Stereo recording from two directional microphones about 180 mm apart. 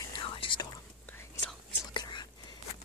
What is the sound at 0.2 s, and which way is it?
Whispering, 30° left (ahead or behind).